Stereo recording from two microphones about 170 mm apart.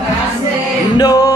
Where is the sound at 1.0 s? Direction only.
20° left (ahead or behind).